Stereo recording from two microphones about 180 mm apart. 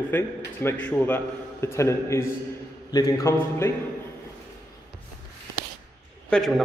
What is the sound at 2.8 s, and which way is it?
Mantra, 20° left (ahead or behind).